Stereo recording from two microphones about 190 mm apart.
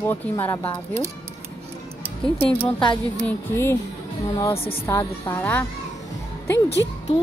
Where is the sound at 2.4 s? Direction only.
10° left (ahead or behind).